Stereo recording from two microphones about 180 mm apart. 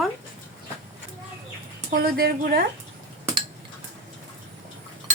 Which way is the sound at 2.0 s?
60° right (ahead or behind).